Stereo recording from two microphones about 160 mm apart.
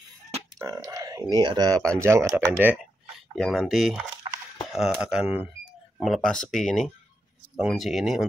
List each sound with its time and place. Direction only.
0.6 s speech: 20° right (ahead or behind)
3.3 s speech: centre (ahead or behind)